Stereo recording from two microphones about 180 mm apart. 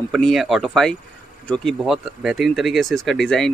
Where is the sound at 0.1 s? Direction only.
Centre (ahead or behind).